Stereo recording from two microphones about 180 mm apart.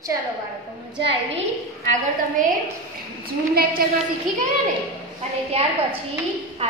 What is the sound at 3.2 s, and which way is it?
Speech, 55° right (ahead or behind).